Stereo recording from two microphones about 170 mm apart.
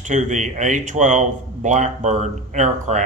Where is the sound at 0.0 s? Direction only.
45° right (ahead or behind).